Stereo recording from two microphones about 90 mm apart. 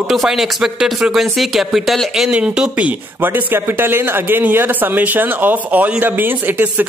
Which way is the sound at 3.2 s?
25° right (ahead or behind).